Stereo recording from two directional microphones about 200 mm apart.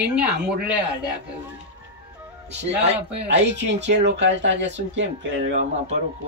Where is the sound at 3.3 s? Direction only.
60° right (ahead or behind).